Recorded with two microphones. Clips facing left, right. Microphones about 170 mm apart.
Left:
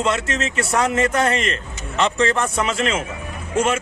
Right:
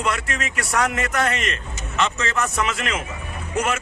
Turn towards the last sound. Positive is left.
turn(degrees=25)  # may be behind; listen again after turning